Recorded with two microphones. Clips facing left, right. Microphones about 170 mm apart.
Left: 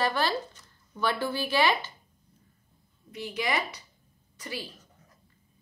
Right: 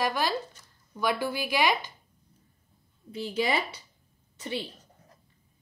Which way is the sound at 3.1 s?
30° right (ahead or behind).